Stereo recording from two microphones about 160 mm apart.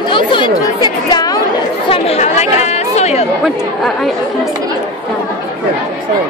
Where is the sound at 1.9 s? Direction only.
40° left (ahead or behind).